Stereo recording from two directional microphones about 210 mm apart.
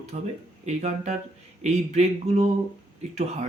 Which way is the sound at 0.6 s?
35° right (ahead or behind).